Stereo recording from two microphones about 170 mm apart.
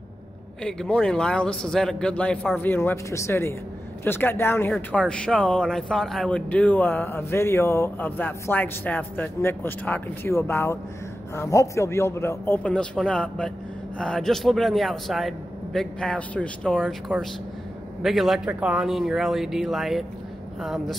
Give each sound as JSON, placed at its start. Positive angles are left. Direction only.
{"t": 0.7, "sound": "a man's voice", "side_deg": 5}
{"t": 16.8, "sound": "a man's voice", "side_deg": -5}